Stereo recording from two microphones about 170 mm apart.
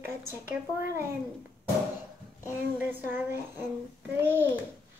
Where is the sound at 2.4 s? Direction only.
10° right (ahead or behind).